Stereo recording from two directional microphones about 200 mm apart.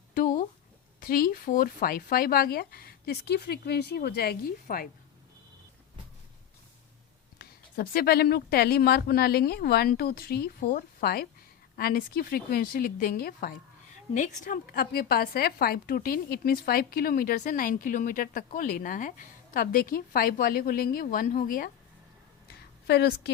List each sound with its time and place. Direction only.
0.1 s a sound: 40° left (ahead or behind)
0.9 s a woman's voice: 45° left (ahead or behind)
7.3 s a woman's voice: 50° left (ahead or behind)
22.9 s a woman's voice: 55° left (ahead or behind)